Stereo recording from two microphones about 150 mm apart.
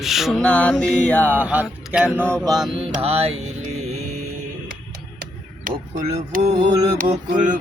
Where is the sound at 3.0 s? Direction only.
40° right (ahead or behind).